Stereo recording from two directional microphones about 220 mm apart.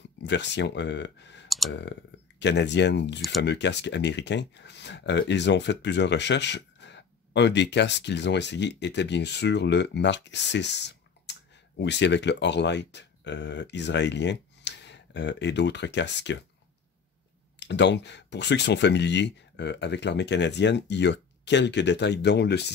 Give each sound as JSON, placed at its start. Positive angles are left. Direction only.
{"t": 0.2, "sound": "speech", "side_deg": 55}
{"t": 3.2, "sound": "speech", "side_deg": 0}
{"t": 3.4, "sound": "speech", "side_deg": 50}
{"t": 17.6, "sound": "speech", "side_deg": 50}